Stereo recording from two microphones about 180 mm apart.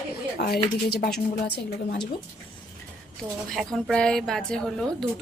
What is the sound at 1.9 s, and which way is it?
Speech, 25° left (ahead or behind).